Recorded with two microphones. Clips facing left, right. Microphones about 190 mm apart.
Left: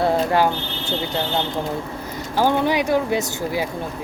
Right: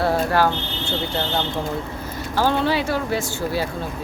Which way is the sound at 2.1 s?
15° left (ahead or behind).